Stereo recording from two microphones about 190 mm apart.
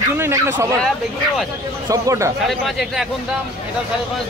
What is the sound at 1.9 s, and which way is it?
Speech, 15° right (ahead or behind).